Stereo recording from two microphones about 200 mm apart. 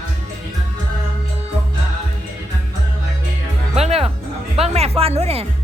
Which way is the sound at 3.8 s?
30° right (ahead or behind).